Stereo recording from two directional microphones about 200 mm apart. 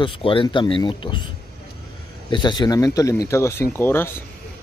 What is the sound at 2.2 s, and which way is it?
Speech, 25° left (ahead or behind).